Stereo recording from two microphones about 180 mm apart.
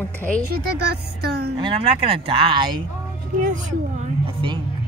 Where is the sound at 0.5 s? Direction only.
65° right (ahead or behind).